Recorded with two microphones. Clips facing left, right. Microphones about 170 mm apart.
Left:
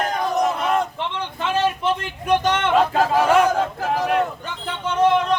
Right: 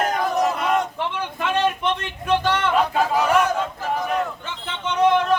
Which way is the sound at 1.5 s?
5° left (ahead or behind).